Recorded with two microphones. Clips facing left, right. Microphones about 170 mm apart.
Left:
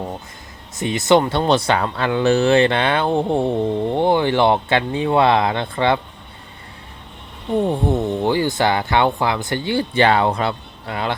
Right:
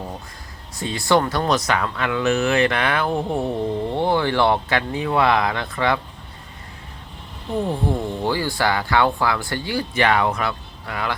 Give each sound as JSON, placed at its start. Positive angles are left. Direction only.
{"t": 0.8, "sound": "speech", "side_deg": 20}
{"t": 7.6, "sound": "speech", "side_deg": 25}